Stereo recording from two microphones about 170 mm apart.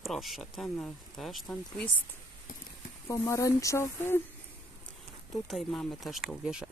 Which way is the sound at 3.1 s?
20° left (ahead or behind).